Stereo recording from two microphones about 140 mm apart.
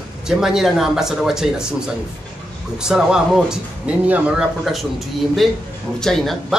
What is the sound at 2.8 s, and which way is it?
Speech, 5° right (ahead or behind).